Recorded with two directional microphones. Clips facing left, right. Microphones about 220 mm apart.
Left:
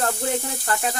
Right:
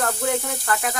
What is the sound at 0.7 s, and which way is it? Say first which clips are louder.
Snake: even; 25° left (ahead or behind).